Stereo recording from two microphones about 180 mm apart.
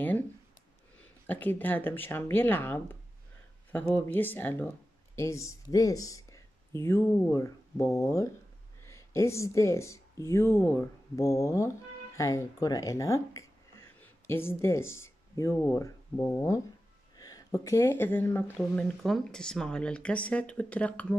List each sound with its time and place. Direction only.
1.2 s speech: 10° left (ahead or behind)
18.6 s speech: centre (ahead or behind)